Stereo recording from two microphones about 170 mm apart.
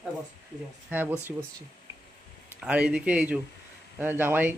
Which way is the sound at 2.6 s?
5° right (ahead or behind).